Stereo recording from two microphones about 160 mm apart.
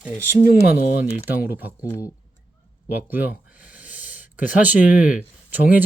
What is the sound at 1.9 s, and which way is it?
Speech, 20° left (ahead or behind).